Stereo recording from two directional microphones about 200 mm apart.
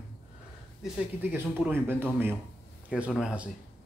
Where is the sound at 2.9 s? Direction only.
5° right (ahead or behind).